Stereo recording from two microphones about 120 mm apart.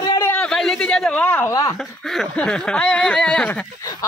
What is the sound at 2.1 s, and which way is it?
A man's voice, centre (ahead or behind).